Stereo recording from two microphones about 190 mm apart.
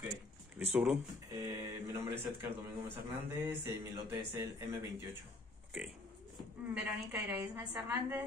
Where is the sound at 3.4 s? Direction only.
10° right (ahead or behind).